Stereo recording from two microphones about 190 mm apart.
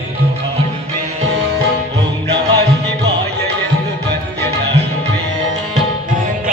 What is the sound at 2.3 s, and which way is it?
Music, 60° right (ahead or behind).